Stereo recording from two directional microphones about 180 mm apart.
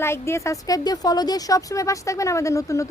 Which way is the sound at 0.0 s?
15° left (ahead or behind).